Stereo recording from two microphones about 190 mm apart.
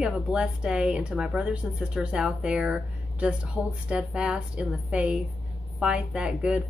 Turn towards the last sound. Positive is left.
turn(degrees=-5)  # may be behind; listen again after turning